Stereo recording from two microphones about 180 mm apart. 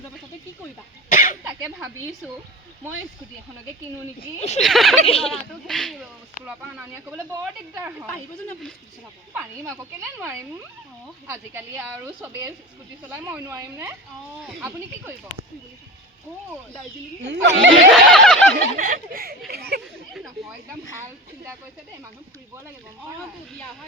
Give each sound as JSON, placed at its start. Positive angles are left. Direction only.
{"t": 1.1, "sound": "cough", "side_deg": 50}
{"t": 4.4, "sound": "speech", "side_deg": 35}
{"t": 4.6, "sound": "speech", "side_deg": 0}
{"t": 5.0, "sound": "speech", "side_deg": 35}
{"t": 5.3, "sound": "speech", "side_deg": 0}
{"t": 9.6, "sound": "speech", "side_deg": -15}
{"t": 17.4, "sound": "speech", "side_deg": -75}
{"t": 17.9, "sound": "a sound", "side_deg": 0}
{"t": 18.8, "sound": "speech", "side_deg": -50}